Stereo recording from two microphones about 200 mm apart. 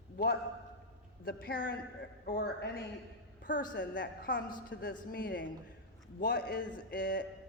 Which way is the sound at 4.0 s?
45° left (ahead or behind).